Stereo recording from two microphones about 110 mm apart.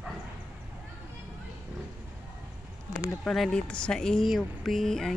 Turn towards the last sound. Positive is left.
turn(degrees=5)  # may be behind; listen again after turning